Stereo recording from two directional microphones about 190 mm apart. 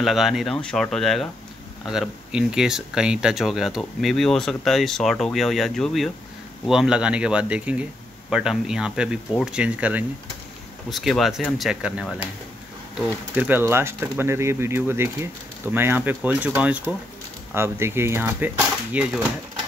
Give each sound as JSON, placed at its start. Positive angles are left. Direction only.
{"t": 0.0, "sound": "speech", "side_deg": 0}